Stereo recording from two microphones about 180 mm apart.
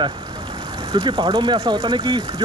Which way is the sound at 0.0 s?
25° right (ahead or behind).